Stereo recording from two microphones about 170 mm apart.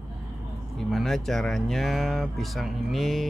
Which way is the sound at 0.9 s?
Centre (ahead or behind).